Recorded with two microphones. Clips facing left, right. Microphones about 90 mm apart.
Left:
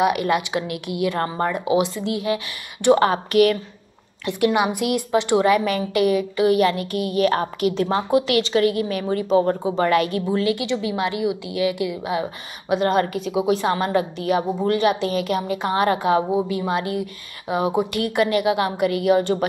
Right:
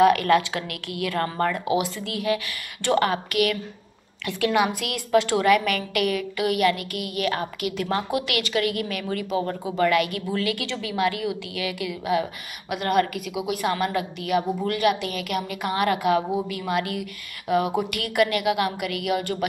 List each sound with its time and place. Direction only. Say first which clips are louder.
0.0 s a woman's voice: right 2 dB; 20° left (ahead or behind); by 3.5 s 35° left (ahead or behind)
4.3 s a woman's voice: left 3 dB; 20° left (ahead or behind)